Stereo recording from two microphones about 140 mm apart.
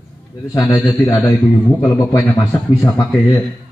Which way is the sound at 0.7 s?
15° left (ahead or behind).